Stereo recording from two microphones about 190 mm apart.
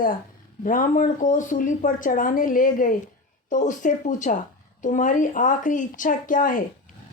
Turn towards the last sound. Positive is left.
turn(degrees=45)  # may be behind; listen again after turning